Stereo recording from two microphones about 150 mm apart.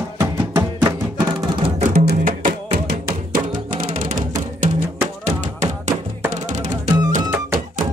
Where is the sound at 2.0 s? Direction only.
75° right (ahead or behind); by 4.8 s 60° right (ahead or behind).